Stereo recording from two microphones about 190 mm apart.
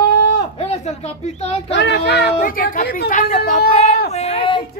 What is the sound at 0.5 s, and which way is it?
Speech, 35° left (ahead or behind).